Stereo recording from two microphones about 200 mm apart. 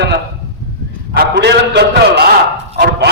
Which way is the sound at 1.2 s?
55° right (ahead or behind).